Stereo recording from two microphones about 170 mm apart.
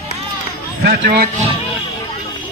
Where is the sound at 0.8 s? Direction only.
65° right (ahead or behind).